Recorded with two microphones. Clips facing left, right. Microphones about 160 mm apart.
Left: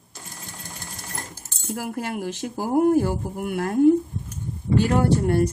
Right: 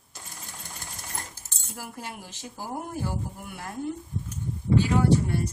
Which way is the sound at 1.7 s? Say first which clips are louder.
Left 10 dB; 70° left (ahead or behind).